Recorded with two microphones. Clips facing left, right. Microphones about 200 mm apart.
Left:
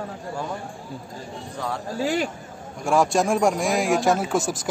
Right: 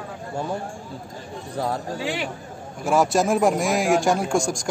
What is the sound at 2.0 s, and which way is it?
Speech, 40° left (ahead or behind).